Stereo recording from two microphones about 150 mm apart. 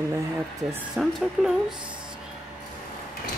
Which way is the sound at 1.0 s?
5° right (ahead or behind).